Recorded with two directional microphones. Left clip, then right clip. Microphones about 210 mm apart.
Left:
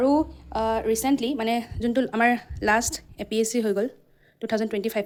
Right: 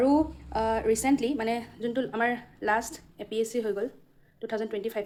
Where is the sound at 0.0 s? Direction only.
20° left (ahead or behind).